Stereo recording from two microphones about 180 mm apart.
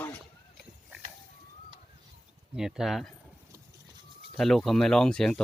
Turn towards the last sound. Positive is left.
turn(degrees=5)  # may be behind; listen again after turning